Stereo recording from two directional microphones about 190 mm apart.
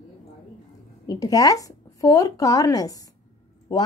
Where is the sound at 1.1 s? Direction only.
20° left (ahead or behind).